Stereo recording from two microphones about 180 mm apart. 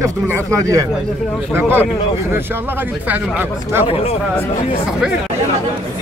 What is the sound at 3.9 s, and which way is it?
Speech, 35° left (ahead or behind).